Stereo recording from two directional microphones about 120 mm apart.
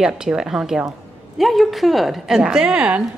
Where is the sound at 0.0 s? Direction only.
5° right (ahead or behind).